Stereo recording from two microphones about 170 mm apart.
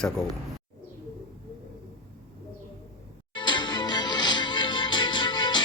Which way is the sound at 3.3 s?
25° left (ahead or behind).